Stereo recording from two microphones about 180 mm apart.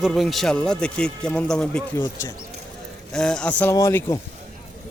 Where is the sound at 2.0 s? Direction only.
25° left (ahead or behind).